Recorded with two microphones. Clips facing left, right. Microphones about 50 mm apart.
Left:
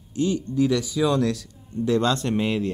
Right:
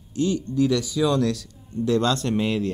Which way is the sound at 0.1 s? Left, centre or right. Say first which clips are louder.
Even; left.